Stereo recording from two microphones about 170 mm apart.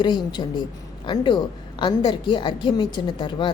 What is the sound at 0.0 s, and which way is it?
A woman's voice, 25° left (ahead or behind).